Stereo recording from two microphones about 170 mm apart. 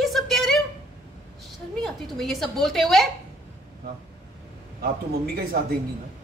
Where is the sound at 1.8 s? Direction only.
Centre (ahead or behind).